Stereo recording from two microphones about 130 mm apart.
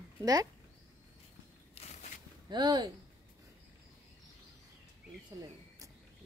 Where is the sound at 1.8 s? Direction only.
60° left (ahead or behind).